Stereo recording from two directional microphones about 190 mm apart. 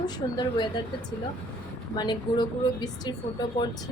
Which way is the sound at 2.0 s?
20° left (ahead or behind).